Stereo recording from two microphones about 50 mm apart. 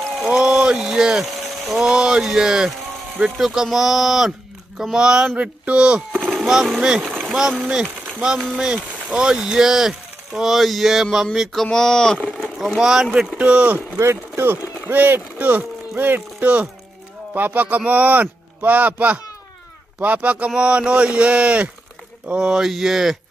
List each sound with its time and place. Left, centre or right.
0.2 s speech: centre
6.1 s a sound: centre
6.4 s speech: centre
11.6 s speech: centre
12.4 s vehicle: centre
12.9 s speech: centre
13.4 s speech: right
13.9 s speech: right
14.5 s a man's voice: right
22.3 s speech: centre